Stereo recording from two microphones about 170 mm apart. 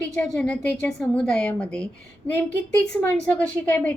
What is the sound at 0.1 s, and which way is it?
A woman's voice, 5° left (ahead or behind).